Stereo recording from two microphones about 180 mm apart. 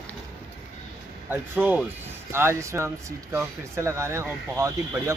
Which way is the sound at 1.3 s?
10° right (ahead or behind).